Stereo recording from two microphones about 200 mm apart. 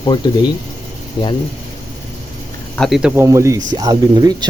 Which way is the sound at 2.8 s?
Centre (ahead or behind).